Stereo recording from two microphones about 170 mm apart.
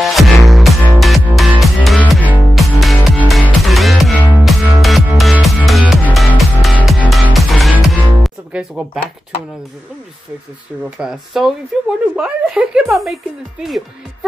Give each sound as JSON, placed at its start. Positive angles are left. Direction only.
{"t": 0.0, "sound": "music", "side_deg": 0}
{"t": 10.8, "sound": "speech", "side_deg": -5}